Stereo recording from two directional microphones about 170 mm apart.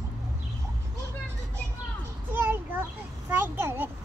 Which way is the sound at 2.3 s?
10° right (ahead or behind).